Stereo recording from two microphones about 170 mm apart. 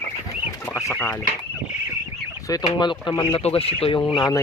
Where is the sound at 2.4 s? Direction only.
20° left (ahead or behind).